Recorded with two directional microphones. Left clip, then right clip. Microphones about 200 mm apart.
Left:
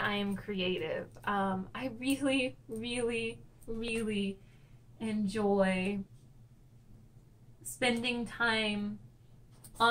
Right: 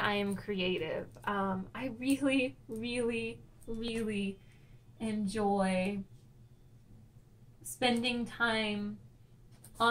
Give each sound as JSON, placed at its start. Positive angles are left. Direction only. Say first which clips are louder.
{"t": 0.0, "sound": "a woman's voice", "louder": "right 1 dB", "side_deg": -25}
{"t": 7.8, "sound": "a woman's voice", "louder": "even", "side_deg": -5}